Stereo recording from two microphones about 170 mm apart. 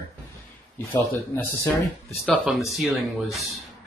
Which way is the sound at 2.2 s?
Centre (ahead or behind).